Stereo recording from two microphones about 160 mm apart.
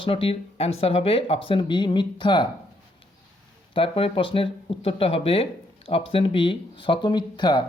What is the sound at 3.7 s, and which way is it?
Speech, 35° left (ahead or behind).